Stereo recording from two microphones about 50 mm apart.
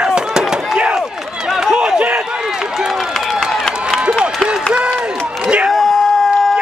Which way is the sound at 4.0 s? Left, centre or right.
Centre.